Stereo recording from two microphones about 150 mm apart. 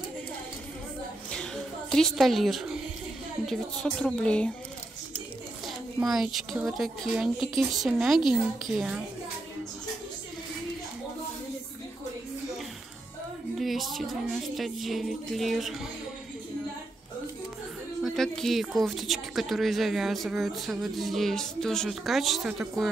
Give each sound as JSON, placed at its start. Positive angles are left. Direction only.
{"t": 1.3, "sound": "a sound", "side_deg": 5}
{"t": 3.4, "sound": "a woman's voice", "side_deg": 5}
{"t": 5.9, "sound": "speech", "side_deg": -5}
{"t": 13.6, "sound": "music", "side_deg": 0}
{"t": 18.0, "sound": "speech", "side_deg": 0}